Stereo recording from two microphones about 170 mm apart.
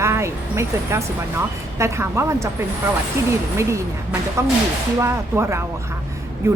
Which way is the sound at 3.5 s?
15° right (ahead or behind).